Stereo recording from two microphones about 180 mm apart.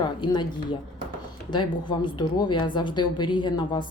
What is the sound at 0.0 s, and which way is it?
A woman's voice, 25° left (ahead or behind).